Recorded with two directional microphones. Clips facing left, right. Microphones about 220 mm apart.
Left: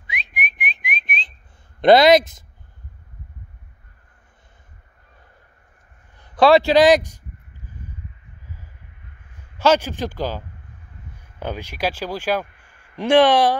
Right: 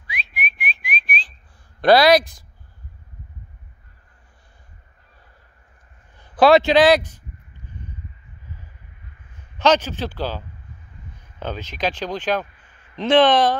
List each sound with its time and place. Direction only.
0.0 s whistling: 20° left (ahead or behind)
1.8 s speech: 20° left (ahead or behind)
6.3 s a man's voice: centre (ahead or behind)
6.8 s a sound: 10° left (ahead or behind)
9.6 s speech: 10° left (ahead or behind)